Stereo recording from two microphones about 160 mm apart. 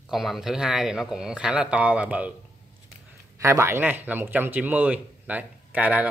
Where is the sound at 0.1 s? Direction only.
Centre (ahead or behind).